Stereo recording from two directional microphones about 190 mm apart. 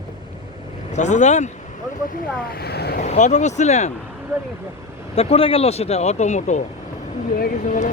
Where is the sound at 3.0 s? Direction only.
40° left (ahead or behind).